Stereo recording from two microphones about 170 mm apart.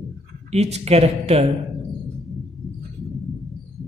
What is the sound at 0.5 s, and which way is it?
Speech, 40° right (ahead or behind).